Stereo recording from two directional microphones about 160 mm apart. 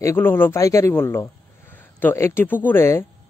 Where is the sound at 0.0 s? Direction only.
15° left (ahead or behind).